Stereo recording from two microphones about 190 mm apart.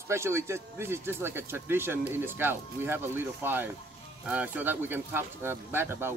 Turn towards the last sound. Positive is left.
turn(degrees=-10)  # may be behind; listen again after turning